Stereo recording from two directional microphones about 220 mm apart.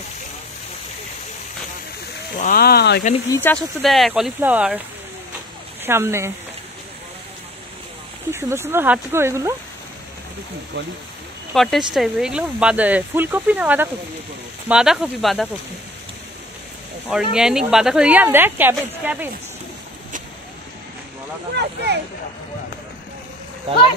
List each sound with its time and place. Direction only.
2.3 s speech: 40° left (ahead or behind)
3.3 s speech: 10° left (ahead or behind); by 4.8 s 5° right (ahead or behind)
5.9 s speech: 10° right (ahead or behind)
8.3 s speech: 10° right (ahead or behind)
11.5 s speech: centre (ahead or behind)
17.1 s speech: 5° right (ahead or behind)
21.5 s speech: 50° right (ahead or behind)